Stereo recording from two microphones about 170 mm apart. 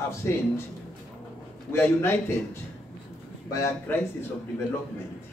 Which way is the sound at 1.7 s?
15° left (ahead or behind).